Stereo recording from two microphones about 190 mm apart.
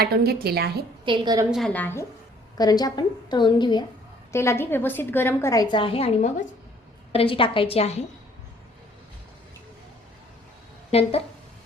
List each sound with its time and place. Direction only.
0.0 s a woman's voice: 55° right (ahead or behind)
1.0 s a woman's voice: 25° right (ahead or behind)
1.5 s a woman's voice: centre (ahead or behind); by 8.0 s 30° left (ahead or behind)